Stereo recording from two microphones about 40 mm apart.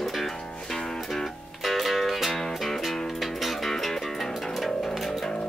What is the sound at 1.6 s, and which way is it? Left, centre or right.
Music, centre.